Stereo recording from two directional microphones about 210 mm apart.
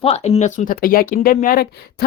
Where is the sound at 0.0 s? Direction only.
30° left (ahead or behind).